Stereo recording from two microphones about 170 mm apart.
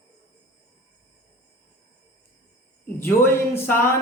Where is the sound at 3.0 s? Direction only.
15° left (ahead or behind).